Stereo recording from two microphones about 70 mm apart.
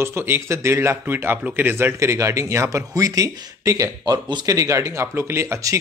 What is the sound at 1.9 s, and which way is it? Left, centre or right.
Speech, right.